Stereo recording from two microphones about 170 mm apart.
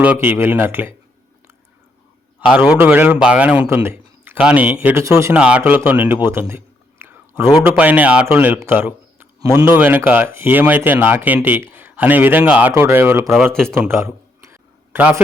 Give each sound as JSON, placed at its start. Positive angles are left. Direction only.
{"t": 0.0, "sound": "speech", "side_deg": -10}
{"t": 2.6, "sound": "speech", "side_deg": -10}
{"t": 7.0, "sound": "whispering", "side_deg": -15}
{"t": 7.5, "sound": "speech", "side_deg": -10}
{"t": 13.2, "sound": "speech", "side_deg": 0}
{"t": 14.4, "sound": "a sound", "side_deg": -10}